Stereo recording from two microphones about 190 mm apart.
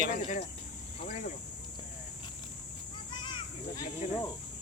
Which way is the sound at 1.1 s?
40° left (ahead or behind).